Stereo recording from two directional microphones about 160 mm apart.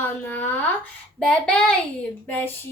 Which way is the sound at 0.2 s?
10° left (ahead or behind).